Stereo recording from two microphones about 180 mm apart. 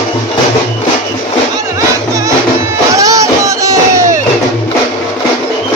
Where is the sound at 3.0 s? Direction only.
20° right (ahead or behind).